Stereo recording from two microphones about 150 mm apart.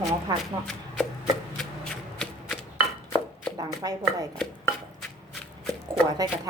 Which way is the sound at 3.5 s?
25° right (ahead or behind).